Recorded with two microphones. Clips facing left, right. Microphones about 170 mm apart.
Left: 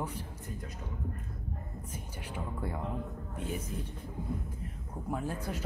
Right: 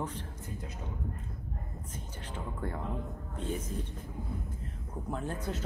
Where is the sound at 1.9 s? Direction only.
10° left (ahead or behind).